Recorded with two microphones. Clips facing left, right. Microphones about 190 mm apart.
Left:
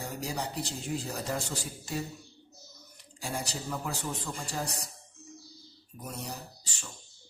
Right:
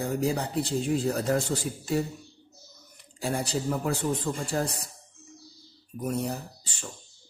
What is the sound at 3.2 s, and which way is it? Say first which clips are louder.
A man's voice: right 7 dB; 55° right (ahead or behind).